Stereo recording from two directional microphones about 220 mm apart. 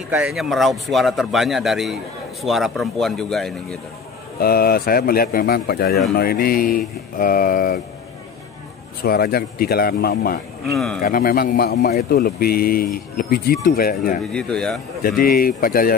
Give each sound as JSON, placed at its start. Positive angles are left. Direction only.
{"t": 0.1, "sound": "a man's voice", "side_deg": -5}
{"t": 4.4, "sound": "a man's voice", "side_deg": 45}
{"t": 9.0, "sound": "a man's voice", "side_deg": 45}
{"t": 10.7, "sound": "a man's voice", "side_deg": 0}
{"t": 11.0, "sound": "a man's voice", "side_deg": 40}
{"t": 14.3, "sound": "a man's voice", "side_deg": 5}
{"t": 15.0, "sound": "speech", "side_deg": 40}